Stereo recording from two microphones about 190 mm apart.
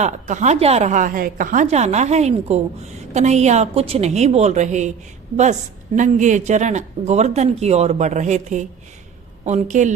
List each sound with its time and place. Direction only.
0.0 s a woman's voice: 40° right (ahead or behind)